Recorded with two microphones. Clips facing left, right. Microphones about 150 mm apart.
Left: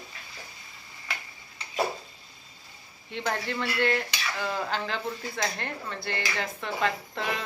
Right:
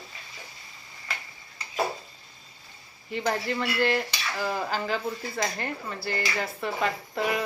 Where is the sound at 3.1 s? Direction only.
Centre (ahead or behind).